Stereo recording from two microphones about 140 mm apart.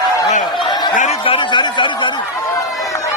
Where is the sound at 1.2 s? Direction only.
35° left (ahead or behind).